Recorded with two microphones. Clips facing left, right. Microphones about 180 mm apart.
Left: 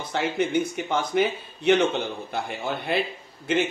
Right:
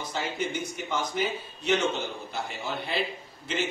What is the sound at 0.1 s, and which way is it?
Speech, 60° left (ahead or behind).